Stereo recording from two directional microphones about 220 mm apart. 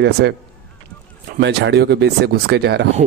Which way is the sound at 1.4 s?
50° right (ahead or behind).